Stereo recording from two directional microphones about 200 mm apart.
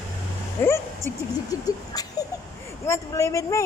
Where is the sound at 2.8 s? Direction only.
15° left (ahead or behind).